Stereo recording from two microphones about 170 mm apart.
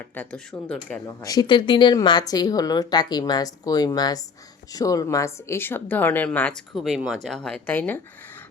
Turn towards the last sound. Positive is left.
turn(degrees=10)  # may be behind; listen again after turning